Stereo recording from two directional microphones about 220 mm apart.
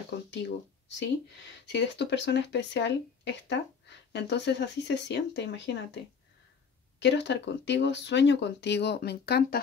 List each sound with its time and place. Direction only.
0.3 s speech: 50° left (ahead or behind)
7.0 s speech: 50° left (ahead or behind)